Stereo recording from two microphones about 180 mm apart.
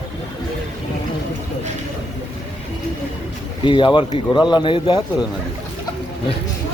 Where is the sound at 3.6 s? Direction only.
25° left (ahead or behind).